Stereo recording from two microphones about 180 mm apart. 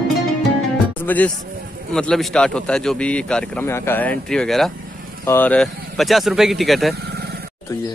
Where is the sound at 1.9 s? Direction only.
5° left (ahead or behind).